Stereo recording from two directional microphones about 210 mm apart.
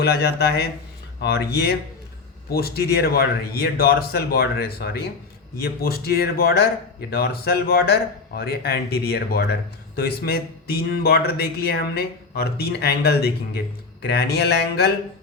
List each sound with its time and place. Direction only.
0.0 s speech: 50° left (ahead or behind)